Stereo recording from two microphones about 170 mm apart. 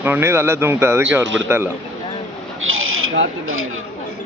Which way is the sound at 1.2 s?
90° right.